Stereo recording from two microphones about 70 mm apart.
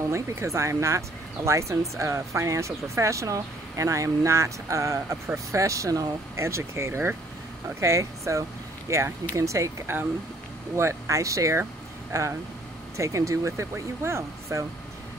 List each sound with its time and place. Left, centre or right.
0.1 s speech: right
7.8 s speech: right